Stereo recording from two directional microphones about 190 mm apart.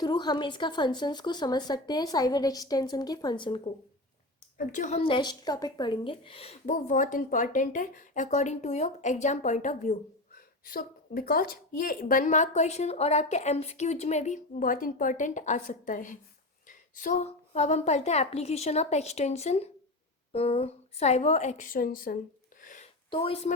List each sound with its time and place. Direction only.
0.0 s a woman's voice: 20° left (ahead or behind)
4.5 s speech: 40° left (ahead or behind)
22.6 s a sound: 40° left (ahead or behind)
23.0 s speech: 30° left (ahead or behind)